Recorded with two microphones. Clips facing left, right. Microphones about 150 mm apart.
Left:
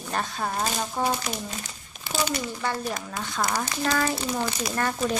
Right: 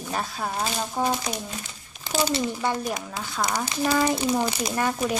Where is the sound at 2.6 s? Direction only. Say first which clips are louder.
Right 2 dB; 15° right (ahead or behind).